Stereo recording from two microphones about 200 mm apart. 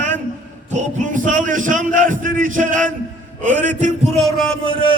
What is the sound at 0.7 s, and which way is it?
A man's voice, 40° right (ahead or behind).